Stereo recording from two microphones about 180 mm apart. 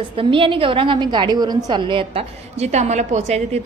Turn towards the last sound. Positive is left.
turn(degrees=-40)  # may be behind; listen again after turning